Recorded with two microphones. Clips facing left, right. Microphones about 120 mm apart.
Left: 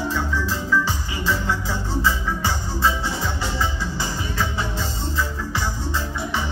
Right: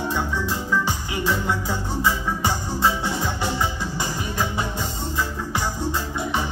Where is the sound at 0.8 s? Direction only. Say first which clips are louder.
Right 1 dB; 15° right (ahead or behind).